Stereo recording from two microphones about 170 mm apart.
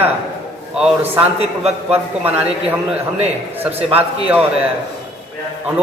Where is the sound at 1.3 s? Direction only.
35° right (ahead or behind).